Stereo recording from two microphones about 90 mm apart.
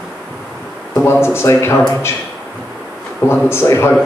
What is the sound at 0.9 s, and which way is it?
Speech, 25° left (ahead or behind).